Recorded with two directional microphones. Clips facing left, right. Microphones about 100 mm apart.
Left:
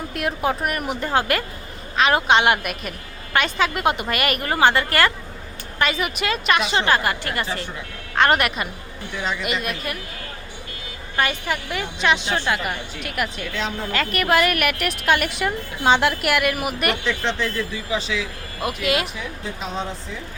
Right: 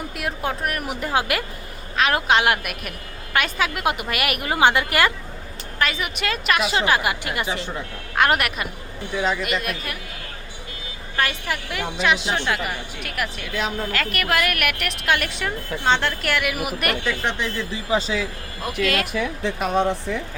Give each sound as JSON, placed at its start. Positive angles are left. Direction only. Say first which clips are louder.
{"t": 0.1, "sound": "a woman's voice", "louder": "left 6 dB", "side_deg": 0}
{"t": 5.8, "sound": "a woman's voice", "louder": "left 2 dB", "side_deg": 0}
{"t": 8.1, "sound": "a woman's voice", "louder": "left 2 dB", "side_deg": -5}
{"t": 11.2, "sound": "a woman's voice", "louder": "left 2 dB", "side_deg": 0}
{"t": 17.2, "sound": "a woman's voice", "louder": "left 1 dB", "side_deg": -15}
{"t": 17.7, "sound": "speech", "louder": "right 3 dB", "side_deg": -35}
{"t": 18.6, "sound": "speech", "louder": "even", "side_deg": 10}
{"t": 19.1, "sound": "speech", "louder": "right 7 dB", "side_deg": -70}